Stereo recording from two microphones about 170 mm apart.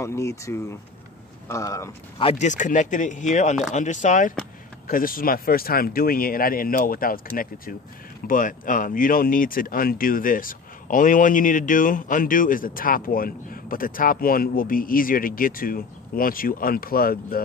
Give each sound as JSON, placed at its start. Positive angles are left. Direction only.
{"t": 0.0, "sound": "speech", "side_deg": 15}
{"t": 2.1, "sound": "speech", "side_deg": 40}
{"t": 4.8, "sound": "speech", "side_deg": 55}
{"t": 8.3, "sound": "speech", "side_deg": 50}